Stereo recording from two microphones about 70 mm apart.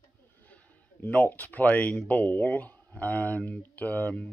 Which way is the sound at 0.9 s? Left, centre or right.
Left.